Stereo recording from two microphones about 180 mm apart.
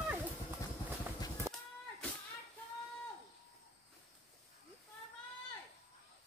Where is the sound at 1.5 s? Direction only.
15° right (ahead or behind).